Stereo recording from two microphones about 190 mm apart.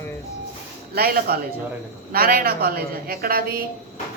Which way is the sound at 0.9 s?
50° right (ahead or behind).